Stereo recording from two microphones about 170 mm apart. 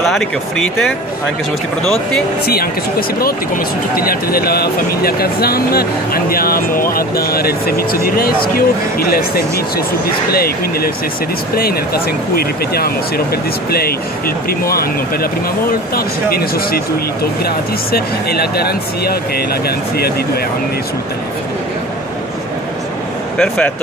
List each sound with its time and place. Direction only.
0.0 s speech: centre (ahead or behind)
2.4 s speech: 60° left (ahead or behind)
15.9 s speech: 60° left (ahead or behind)
23.3 s speech: 5° left (ahead or behind)